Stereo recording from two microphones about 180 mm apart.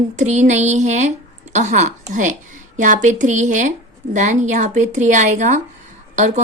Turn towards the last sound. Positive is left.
turn(degrees=-40)  # may be behind; listen again after turning